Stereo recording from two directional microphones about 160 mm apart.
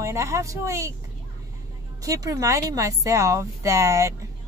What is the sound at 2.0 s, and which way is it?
Speech, 20° right (ahead or behind).